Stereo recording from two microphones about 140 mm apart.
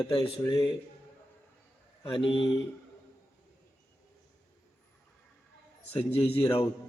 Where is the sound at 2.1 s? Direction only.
35° left (ahead or behind).